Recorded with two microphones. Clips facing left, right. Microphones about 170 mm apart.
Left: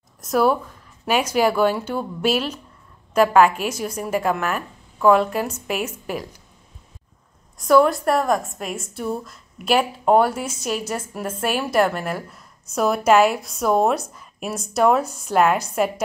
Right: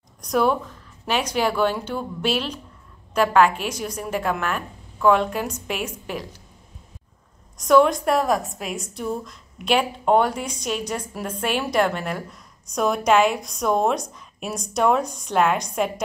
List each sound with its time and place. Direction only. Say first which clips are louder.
0.2 s a woman's voice: left 2 dB; 5° left (ahead or behind)
7.6 s a woman's voice: left 1 dB; 5° left (ahead or behind)